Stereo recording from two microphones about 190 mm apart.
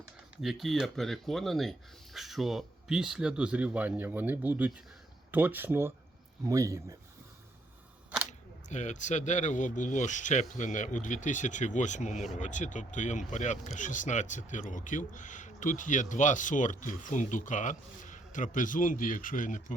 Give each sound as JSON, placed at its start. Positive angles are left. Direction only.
{"t": 0.4, "sound": "speech", "side_deg": 0}
{"t": 8.3, "sound": "speech", "side_deg": 40}